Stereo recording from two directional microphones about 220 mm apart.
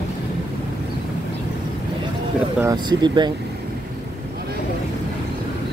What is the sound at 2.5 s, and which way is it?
Speech, 15° right (ahead or behind).